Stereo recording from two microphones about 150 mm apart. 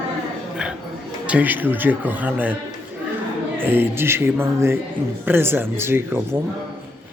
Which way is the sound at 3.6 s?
15° right (ahead or behind).